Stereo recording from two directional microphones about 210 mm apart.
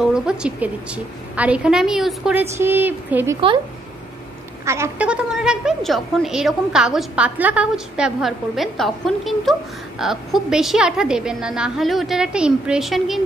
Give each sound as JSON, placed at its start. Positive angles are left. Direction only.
{"t": 0.0, "sound": "a woman's voice", "side_deg": -5}
{"t": 3.3, "sound": "a woman's voice", "side_deg": -25}
{"t": 4.6, "sound": "a woman's voice", "side_deg": -15}